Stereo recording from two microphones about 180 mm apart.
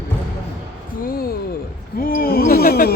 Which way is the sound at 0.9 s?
55° left (ahead or behind).